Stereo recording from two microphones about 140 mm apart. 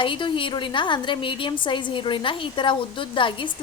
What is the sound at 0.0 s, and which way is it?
A woman's voice, 35° left (ahead or behind).